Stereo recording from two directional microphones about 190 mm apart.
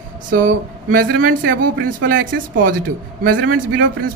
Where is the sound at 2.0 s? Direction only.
65° right (ahead or behind).